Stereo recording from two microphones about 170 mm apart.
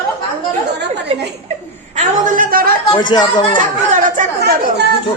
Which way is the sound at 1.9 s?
50° right (ahead or behind).